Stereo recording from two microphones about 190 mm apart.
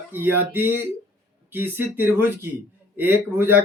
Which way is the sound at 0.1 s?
10° right (ahead or behind).